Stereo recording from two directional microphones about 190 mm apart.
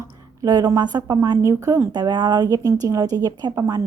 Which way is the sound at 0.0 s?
20° right (ahead or behind).